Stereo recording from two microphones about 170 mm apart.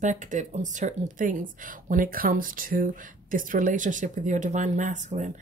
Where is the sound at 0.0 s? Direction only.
45° right (ahead or behind).